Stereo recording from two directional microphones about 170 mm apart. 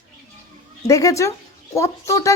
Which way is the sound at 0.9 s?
20° left (ahead or behind).